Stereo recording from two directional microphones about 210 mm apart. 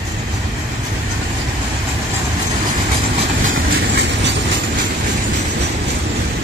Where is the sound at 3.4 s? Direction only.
50° right (ahead or behind).